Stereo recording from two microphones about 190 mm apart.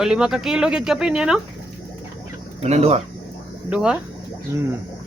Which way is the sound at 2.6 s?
35° right (ahead or behind).